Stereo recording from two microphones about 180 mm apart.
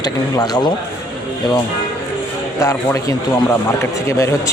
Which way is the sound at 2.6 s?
20° left (ahead or behind).